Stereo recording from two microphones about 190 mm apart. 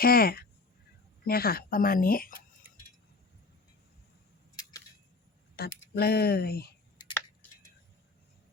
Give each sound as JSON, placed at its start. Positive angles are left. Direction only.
{"t": 0.0, "sound": "speech", "side_deg": 50}
{"t": 5.5, "sound": "speech", "side_deg": 55}